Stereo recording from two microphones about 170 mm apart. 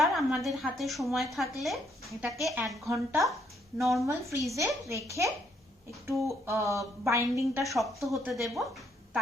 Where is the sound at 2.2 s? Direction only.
15° right (ahead or behind).